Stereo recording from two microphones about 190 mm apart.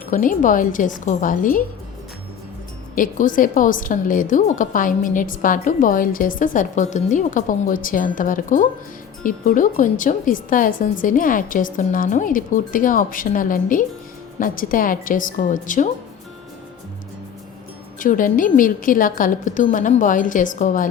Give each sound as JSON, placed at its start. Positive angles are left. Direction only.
{"t": 0.1, "sound": "a woman's voice", "side_deg": 45}
{"t": 2.9, "sound": "a woman's voice", "side_deg": 45}
{"t": 18.0, "sound": "a woman's voice", "side_deg": 45}